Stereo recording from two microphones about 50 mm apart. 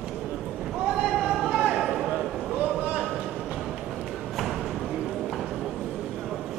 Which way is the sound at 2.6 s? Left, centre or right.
Right.